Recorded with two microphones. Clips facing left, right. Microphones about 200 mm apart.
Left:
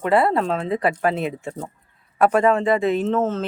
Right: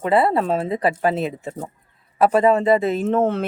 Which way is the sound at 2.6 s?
40° right (ahead or behind).